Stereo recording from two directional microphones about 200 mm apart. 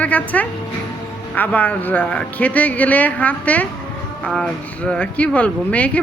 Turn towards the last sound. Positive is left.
turn(degrees=5)  # may be behind; listen again after turning